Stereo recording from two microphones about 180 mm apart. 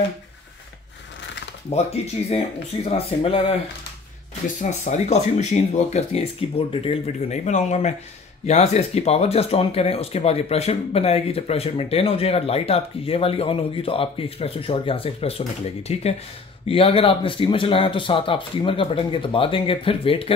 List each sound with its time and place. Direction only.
1.7 s speech: 35° left (ahead or behind)
4.6 s speech: 40° left (ahead or behind)